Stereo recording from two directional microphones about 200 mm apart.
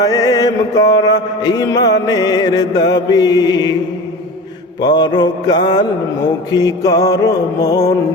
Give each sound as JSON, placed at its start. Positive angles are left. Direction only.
{"t": 0.0, "sound": "mantra", "side_deg": 20}
{"t": 4.8, "sound": "mantra", "side_deg": 20}
{"t": 6.5, "sound": "music", "side_deg": 20}